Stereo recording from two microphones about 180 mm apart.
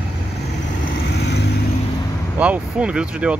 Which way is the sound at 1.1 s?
70° left (ahead or behind).